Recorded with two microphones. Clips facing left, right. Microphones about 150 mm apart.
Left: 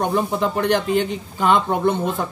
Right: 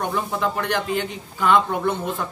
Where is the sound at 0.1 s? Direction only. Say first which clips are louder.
Left 4 dB; 25° left (ahead or behind).